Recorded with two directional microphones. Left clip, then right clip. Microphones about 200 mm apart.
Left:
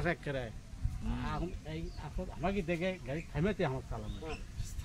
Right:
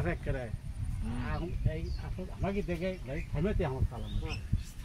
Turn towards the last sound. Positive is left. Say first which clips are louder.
# even
turn(degrees=30)  # may be behind; listen again after turning